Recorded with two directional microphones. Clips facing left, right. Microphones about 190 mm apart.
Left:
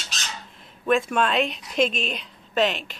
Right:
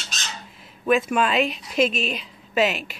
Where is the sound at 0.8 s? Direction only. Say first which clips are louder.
Right 1 dB; 5° right (ahead or behind).